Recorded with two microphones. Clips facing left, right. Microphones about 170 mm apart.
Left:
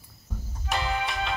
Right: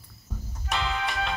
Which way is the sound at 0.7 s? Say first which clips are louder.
Left 1 dB; centre (ahead or behind).